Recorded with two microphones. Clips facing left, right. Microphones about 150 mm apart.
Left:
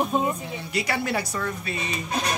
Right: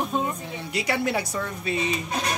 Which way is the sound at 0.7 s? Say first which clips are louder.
Right 1 dB; 20° right (ahead or behind).